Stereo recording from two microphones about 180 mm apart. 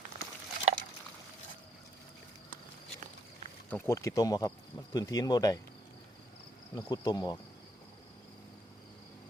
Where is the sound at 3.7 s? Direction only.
15° left (ahead or behind).